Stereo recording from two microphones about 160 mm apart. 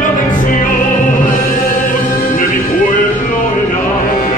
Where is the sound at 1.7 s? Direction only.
55° left (ahead or behind).